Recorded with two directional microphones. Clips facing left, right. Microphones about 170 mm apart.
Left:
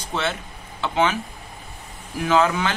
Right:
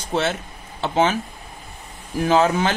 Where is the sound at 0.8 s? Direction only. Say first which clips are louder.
Right 2 dB; 30° right (ahead or behind).